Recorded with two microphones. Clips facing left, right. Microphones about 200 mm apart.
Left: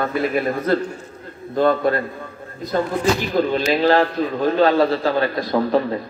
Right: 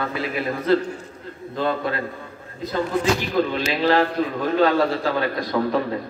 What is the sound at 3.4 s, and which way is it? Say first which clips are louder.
A man's voice: left 3 dB; 35° left (ahead or behind).